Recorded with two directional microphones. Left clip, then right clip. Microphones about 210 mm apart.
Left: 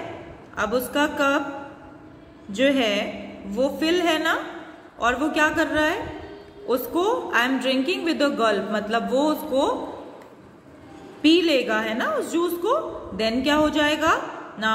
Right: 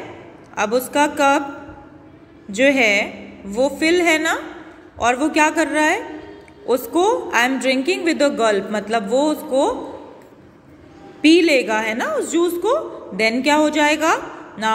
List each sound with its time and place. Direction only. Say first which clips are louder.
0.6 s a woman's voice: right 5 dB; 25° right (ahead or behind)
2.5 s a woman's voice: right 6 dB; 30° right (ahead or behind)
11.2 s a woman's voice: right 5 dB; 25° right (ahead or behind)